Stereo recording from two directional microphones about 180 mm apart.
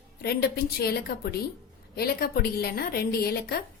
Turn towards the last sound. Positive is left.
turn(degrees=60)  # may be behind; listen again after turning